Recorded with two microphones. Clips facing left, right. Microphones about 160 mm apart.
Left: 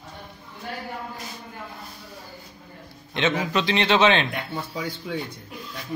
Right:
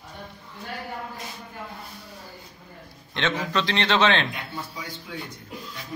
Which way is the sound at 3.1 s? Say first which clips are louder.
Left 2 dB; 10° left (ahead or behind).